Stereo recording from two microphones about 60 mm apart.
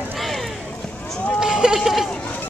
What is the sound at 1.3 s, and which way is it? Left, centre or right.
Run, centre.